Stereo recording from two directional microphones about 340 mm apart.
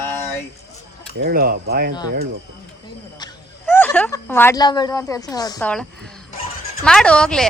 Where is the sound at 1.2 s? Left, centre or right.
Right.